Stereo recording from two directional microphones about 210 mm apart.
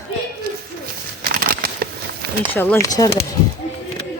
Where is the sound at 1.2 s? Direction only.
45° right (ahead or behind).